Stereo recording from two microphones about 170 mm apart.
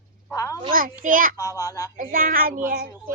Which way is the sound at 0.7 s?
55° right (ahead or behind).